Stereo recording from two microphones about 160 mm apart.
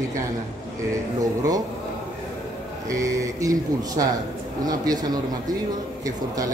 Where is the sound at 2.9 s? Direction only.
20° right (ahead or behind).